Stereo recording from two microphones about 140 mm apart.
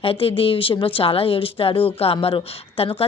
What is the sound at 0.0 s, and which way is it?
Speech, 40° left (ahead or behind).